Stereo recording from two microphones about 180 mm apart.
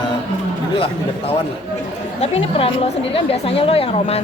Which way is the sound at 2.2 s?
35° left (ahead or behind).